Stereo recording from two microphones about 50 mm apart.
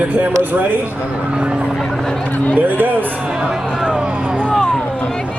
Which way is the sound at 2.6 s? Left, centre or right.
Right.